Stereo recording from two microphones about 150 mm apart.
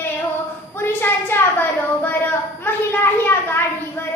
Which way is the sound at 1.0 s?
15° left (ahead or behind).